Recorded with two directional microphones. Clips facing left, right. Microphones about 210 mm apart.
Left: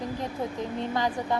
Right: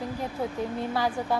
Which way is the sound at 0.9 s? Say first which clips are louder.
Even; 10° right (ahead or behind).